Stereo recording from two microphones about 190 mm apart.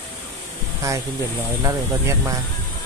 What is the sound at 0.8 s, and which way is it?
Speech, 15° right (ahead or behind).